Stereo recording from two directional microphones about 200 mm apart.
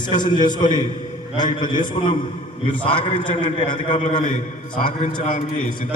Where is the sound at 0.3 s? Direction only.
40° left (ahead or behind).